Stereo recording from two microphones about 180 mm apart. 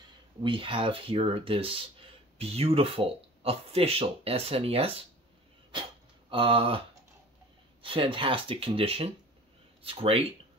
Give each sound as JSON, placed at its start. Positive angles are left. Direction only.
{"t": 0.4, "sound": "speech", "side_deg": -30}
{"t": 6.3, "sound": "speech", "side_deg": -30}
{"t": 7.8, "sound": "speech", "side_deg": -30}